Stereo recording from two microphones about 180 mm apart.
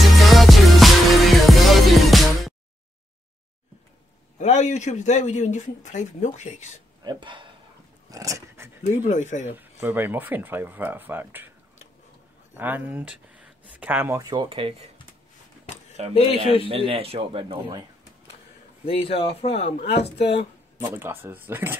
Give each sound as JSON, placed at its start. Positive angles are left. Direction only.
{"t": 0.0, "sound": "music", "side_deg": 0}
{"t": 4.4, "sound": "speech", "side_deg": 40}
{"t": 7.1, "sound": "speech", "side_deg": -25}
{"t": 9.0, "sound": "speech", "side_deg": 40}
{"t": 9.5, "sound": "speech", "side_deg": -10}
{"t": 12.5, "sound": "speech", "side_deg": -10}
{"t": 16.0, "sound": "speech", "side_deg": -35}
{"t": 18.9, "sound": "speech", "side_deg": 30}
{"t": 20.9, "sound": "speech", "side_deg": -10}